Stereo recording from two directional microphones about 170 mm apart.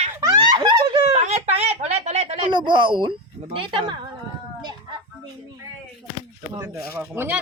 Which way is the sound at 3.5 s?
30° right (ahead or behind).